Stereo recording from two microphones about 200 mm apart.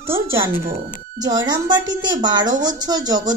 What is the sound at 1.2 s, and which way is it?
Speech, 20° right (ahead or behind).